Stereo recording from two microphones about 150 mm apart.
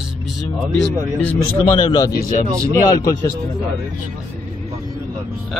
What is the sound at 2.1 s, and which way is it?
Speech, 80° left.